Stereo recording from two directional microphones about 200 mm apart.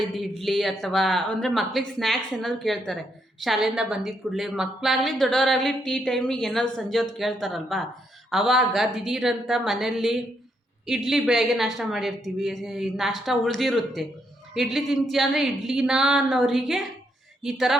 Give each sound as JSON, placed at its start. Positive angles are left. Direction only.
{"t": 0.0, "sound": "a woman's voice", "side_deg": 0}